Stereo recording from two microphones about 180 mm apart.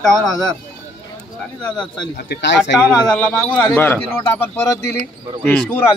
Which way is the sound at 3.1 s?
5° left (ahead or behind).